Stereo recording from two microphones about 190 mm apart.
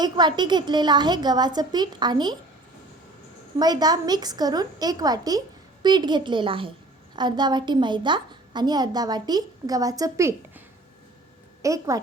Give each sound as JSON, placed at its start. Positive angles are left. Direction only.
{"t": 0.0, "sound": "a woman's voice", "side_deg": -20}
{"t": 3.6, "sound": "a woman's voice", "side_deg": -20}
{"t": 11.6, "sound": "a woman's voice", "side_deg": -15}